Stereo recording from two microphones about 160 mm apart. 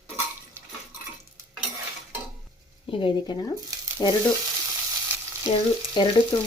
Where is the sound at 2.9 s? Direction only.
30° left (ahead or behind).